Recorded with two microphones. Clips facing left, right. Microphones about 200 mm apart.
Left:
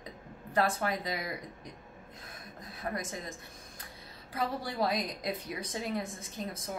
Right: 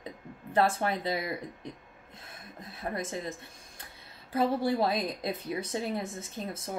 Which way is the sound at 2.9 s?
30° right (ahead or behind).